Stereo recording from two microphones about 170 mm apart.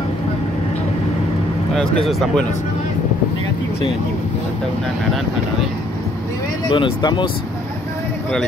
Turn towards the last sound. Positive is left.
turn(degrees=25)  # may be behind; listen again after turning